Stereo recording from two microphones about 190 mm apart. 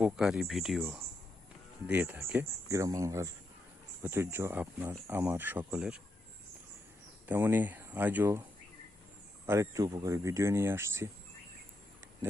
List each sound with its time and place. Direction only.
0.0 s speech: 5° right (ahead or behind)
0.8 s speech: 10° right (ahead or behind)
7.3 s speech: 10° right (ahead or behind)
9.5 s speech: 15° right (ahead or behind)